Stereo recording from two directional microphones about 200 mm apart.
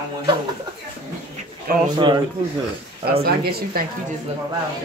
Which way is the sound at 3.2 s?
50° right (ahead or behind).